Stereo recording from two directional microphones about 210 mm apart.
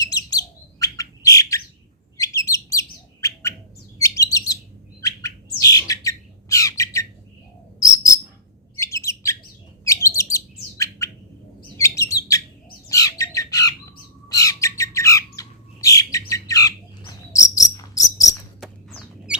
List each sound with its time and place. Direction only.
0.0 s bird: 15° left (ahead or behind)
7.8 s insect: 15° left (ahead or behind)
8.8 s bird: 15° left (ahead or behind)
11.8 s chirp: 15° left (ahead or behind)
12.9 s squawk: 15° left (ahead or behind)
14.3 s bird: 15° left (ahead or behind)
18.6 s rodents: 5° right (ahead or behind)